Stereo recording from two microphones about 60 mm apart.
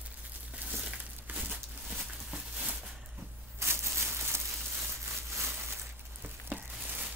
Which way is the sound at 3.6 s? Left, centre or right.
Right.